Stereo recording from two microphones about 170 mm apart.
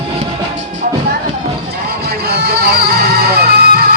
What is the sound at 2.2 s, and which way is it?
Music, 65° right (ahead or behind).